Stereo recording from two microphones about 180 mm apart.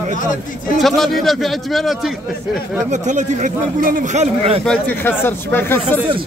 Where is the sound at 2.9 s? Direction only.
45° right (ahead or behind).